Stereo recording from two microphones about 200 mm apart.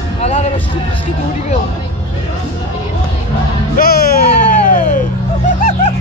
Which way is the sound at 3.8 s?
50° left (ahead or behind).